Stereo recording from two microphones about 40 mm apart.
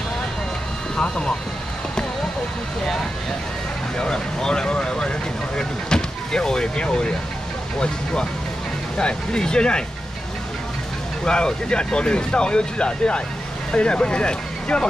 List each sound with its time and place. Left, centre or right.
0.9 s vehicle: centre
4.0 s speech: centre
5.6 s vehicle: centre
6.8 s speech: left
11.2 s speech: left